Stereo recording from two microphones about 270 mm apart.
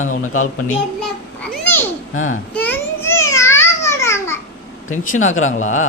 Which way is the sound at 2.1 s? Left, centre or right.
Left.